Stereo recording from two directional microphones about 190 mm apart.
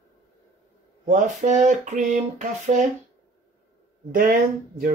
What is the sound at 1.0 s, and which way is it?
Speech, 40° right (ahead or behind).